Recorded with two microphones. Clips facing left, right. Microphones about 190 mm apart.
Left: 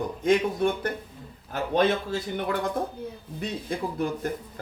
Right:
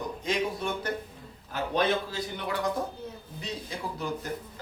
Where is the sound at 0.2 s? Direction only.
55° left (ahead or behind).